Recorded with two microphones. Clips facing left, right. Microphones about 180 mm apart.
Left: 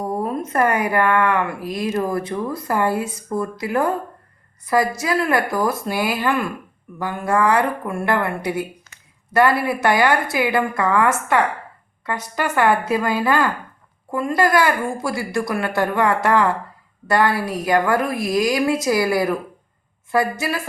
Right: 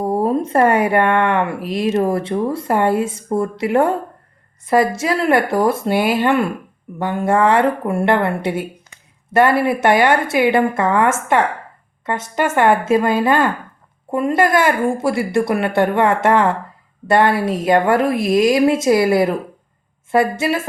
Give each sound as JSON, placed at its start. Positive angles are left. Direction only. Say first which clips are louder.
{"t": 0.0, "sound": "speech", "louder": "right 6 dB", "side_deg": -30}